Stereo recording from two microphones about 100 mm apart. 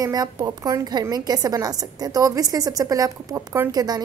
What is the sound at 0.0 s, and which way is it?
A woman's voice, 40° right (ahead or behind).